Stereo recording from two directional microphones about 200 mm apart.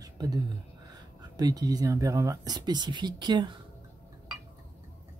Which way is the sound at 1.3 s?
20° right (ahead or behind).